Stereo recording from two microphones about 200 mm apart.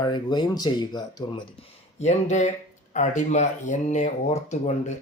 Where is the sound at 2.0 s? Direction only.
35° left (ahead or behind).